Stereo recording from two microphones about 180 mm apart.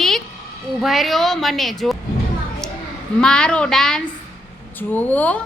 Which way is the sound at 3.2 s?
5° left (ahead or behind).